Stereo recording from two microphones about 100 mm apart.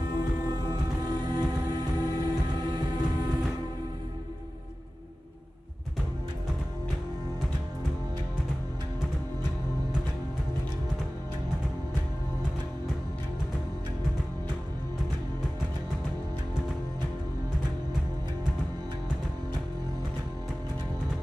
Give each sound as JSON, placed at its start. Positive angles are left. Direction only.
{"t": 0.1, "sound": "music", "side_deg": -45}